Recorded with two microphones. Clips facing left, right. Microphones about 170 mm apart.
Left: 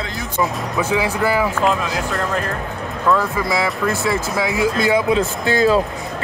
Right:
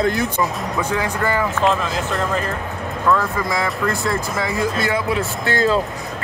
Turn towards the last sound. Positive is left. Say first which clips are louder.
# left 3 dB
turn(degrees=15)  # may be behind; listen again after turning